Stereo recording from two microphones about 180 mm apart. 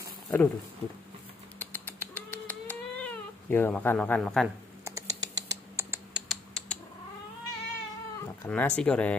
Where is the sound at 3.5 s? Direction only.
10° left (ahead or behind).